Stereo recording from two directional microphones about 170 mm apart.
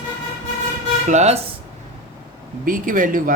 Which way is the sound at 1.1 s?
40° right (ahead or behind).